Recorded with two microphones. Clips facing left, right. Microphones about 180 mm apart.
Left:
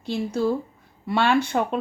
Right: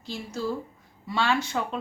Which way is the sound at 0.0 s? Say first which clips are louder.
Left 8 dB; 60° left (ahead or behind).